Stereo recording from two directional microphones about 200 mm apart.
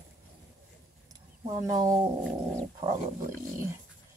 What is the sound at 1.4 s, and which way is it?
Speech, 20° right (ahead or behind).